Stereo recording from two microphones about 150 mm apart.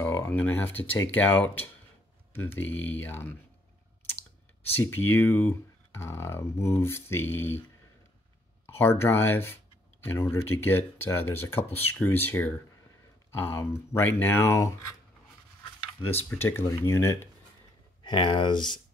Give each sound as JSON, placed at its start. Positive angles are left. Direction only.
{"t": 0.0, "sound": "speech", "side_deg": 15}
{"t": 4.6, "sound": "speech", "side_deg": 15}
{"t": 8.7, "sound": "speech", "side_deg": 15}
{"t": 16.1, "sound": "speech", "side_deg": 15}
{"t": 18.0, "sound": "speech", "side_deg": 30}